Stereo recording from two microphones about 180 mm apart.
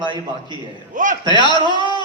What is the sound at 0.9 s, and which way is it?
Speech, 45° right (ahead or behind).